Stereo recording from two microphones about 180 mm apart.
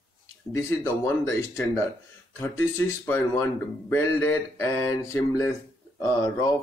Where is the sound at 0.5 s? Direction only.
15° left (ahead or behind).